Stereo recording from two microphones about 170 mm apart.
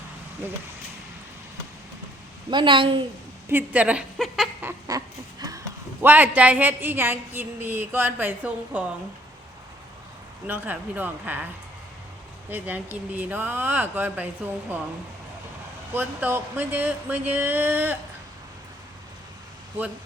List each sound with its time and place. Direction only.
2.5 s a woman's voice: 30° right (ahead or behind)
3.5 s speech: 10° right (ahead or behind)
4.9 s speech: 20° right (ahead or behind)
10.4 s speech: 10° right (ahead or behind)
12.5 s speech: 10° right (ahead or behind)
16.0 s speech: 10° right (ahead or behind)